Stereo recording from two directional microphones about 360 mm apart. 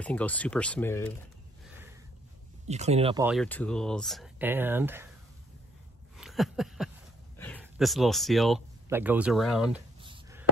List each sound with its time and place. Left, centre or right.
0.0 s speech: centre
1.7 s sniff: centre
2.6 s speech: centre
3.3 s speech: centre
6.1 s a sound: centre
7.3 s speech: centre
10.0 s a sound: centre